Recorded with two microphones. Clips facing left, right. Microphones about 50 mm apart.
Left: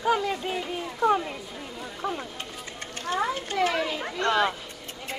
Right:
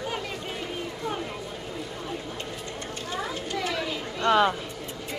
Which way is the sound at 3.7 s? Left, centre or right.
Left.